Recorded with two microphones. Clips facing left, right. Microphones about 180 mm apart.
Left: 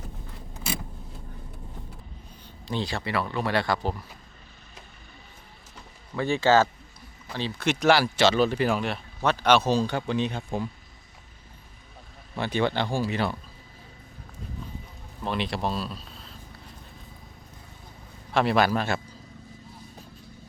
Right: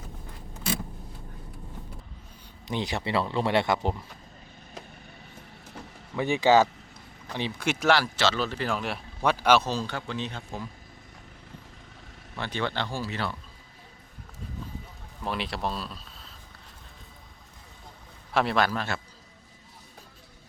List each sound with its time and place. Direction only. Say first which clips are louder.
2.6 s speech: even; 20° right (ahead or behind)
6.1 s a man's voice: even; 15° right (ahead or behind)
7.9 s a man's voice: left 4 dB; 10° left (ahead or behind)
8.8 s a man's voice: left 1 dB; 5° right (ahead or behind)
9.6 s a man's voice: left 6 dB; 15° left (ahead or behind)
12.4 s a man's voice: left 5 dB; 10° left (ahead or behind)
15.2 s speech: left 3 dB; 5° right (ahead or behind)
18.3 s a man's voice: left 3 dB; 5° left (ahead or behind)